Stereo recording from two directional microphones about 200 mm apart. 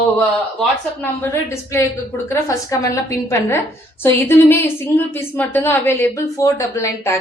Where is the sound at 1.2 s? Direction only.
15° left (ahead or behind).